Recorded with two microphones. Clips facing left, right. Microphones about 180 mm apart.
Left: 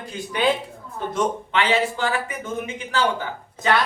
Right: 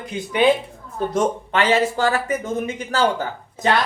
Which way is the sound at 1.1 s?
45° right (ahead or behind).